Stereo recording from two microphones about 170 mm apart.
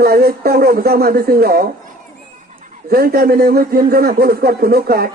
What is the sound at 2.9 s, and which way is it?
Speech, 65° right (ahead or behind).